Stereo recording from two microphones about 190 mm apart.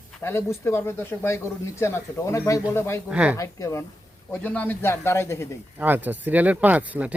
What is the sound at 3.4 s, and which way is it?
Speech, 15° left (ahead or behind).